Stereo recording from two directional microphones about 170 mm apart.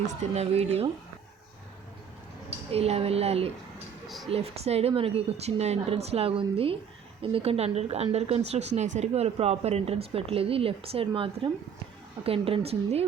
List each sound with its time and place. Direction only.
0.2 s speech: 40° right (ahead or behind)
2.7 s speech: 35° right (ahead or behind)
4.0 s a sound: centre (ahead or behind)
4.3 s speech: 35° right (ahead or behind)